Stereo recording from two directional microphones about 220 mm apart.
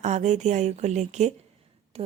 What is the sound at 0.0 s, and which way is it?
A woman's voice, 30° right (ahead or behind).